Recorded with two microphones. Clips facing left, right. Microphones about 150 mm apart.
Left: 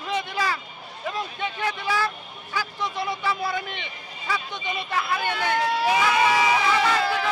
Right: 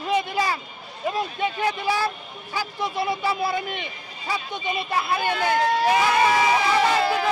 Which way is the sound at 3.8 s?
45° right (ahead or behind).